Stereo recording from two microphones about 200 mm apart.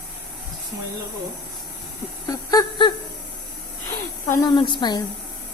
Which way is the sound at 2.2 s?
20° left (ahead or behind).